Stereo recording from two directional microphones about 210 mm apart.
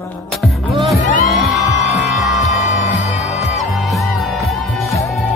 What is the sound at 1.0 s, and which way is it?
Music, 35° left (ahead or behind).